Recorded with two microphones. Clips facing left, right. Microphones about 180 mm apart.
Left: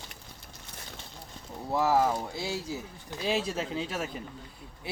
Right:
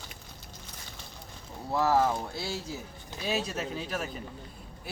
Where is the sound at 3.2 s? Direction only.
30° left (ahead or behind).